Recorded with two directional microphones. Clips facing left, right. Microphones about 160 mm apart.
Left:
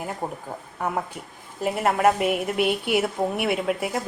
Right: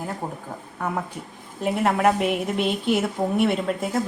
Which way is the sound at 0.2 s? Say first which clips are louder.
Left 1 dB; 15° left (ahead or behind).